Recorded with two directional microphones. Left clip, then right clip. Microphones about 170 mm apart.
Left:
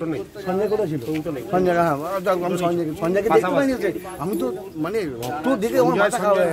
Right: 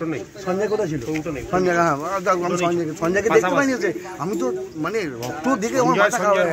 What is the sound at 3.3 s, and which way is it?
Speech, 30° right (ahead or behind).